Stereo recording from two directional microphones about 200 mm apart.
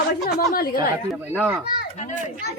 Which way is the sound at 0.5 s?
45° left (ahead or behind).